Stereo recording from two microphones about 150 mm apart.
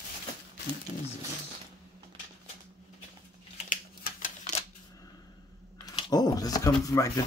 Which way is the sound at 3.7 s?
65° left (ahead or behind).